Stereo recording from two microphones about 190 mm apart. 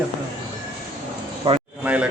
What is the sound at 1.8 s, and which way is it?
Speech, 5° right (ahead or behind).